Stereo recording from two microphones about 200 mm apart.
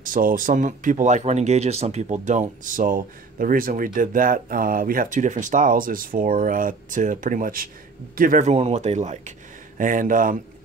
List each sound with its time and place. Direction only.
0.0 s speech: 45° right (ahead or behind)